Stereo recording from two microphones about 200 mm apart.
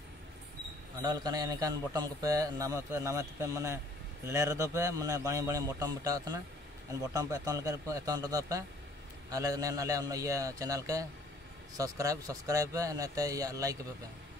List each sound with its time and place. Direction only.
1.0 s a man's voice: 20° right (ahead or behind)